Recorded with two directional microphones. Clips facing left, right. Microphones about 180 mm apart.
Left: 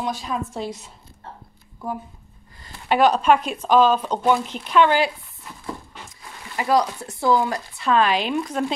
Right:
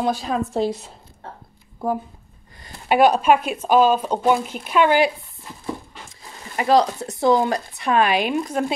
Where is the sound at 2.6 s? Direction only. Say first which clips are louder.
Right 2 dB; 10° right (ahead or behind).